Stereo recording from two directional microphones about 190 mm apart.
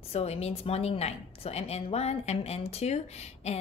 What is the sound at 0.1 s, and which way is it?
A woman's voice, 30° left (ahead or behind).